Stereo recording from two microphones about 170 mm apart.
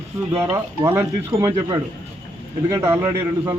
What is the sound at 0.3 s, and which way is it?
Speech, 15° right (ahead or behind).